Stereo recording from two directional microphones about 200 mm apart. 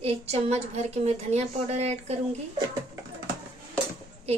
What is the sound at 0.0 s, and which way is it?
A woman's voice, 30° right (ahead or behind).